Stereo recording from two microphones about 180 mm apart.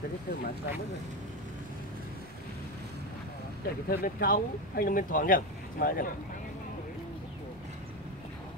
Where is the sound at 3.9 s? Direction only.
55° left (ahead or behind).